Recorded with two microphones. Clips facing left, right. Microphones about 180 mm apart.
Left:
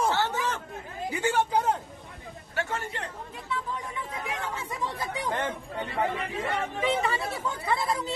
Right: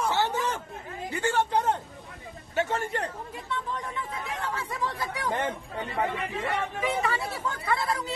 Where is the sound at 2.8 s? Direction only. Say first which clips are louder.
Right 5 dB; 45° right (ahead or behind).